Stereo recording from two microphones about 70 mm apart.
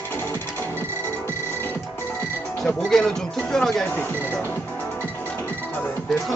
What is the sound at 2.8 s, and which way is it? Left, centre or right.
Music, centre.